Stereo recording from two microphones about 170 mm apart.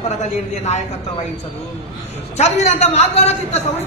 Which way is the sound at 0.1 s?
40° left (ahead or behind).